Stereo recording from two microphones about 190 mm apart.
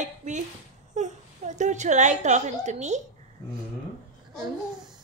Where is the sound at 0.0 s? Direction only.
40° right (ahead or behind).